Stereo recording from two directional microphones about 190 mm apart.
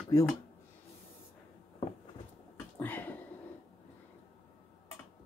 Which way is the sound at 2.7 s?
10° left (ahead or behind).